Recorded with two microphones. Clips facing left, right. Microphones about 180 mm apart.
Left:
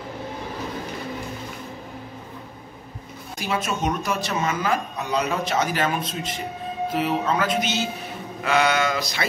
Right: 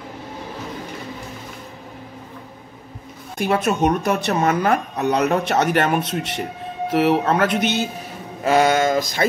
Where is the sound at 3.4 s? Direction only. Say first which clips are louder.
Right 7 dB; 55° right (ahead or behind).